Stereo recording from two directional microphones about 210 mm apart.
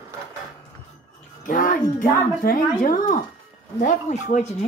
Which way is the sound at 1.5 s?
40° left (ahead or behind).